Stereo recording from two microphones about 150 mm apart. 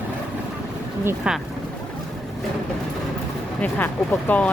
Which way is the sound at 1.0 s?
5° right (ahead or behind).